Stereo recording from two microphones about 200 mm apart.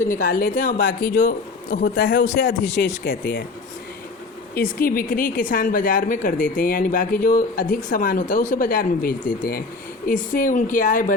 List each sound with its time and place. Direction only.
0.0 s a woman's voice: 40° left (ahead or behind)
2.0 s a woman's voice: 60° left (ahead or behind)
4.5 s a woman's voice: 45° left (ahead or behind)